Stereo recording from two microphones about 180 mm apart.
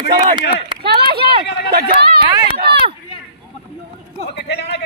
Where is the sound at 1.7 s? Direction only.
60° right (ahead or behind).